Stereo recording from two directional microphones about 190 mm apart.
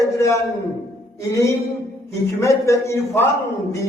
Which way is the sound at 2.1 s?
15° left (ahead or behind).